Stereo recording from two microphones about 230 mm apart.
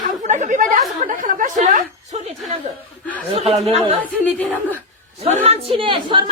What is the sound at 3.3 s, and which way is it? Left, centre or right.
Speech, right.